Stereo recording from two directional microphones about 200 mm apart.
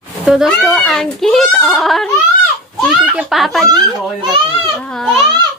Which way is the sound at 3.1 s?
Centre (ahead or behind).